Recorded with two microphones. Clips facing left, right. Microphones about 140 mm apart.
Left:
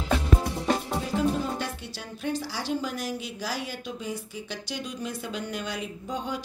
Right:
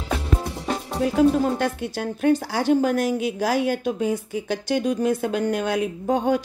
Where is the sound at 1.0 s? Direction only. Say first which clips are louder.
Right 11 dB; 55° right (ahead or behind).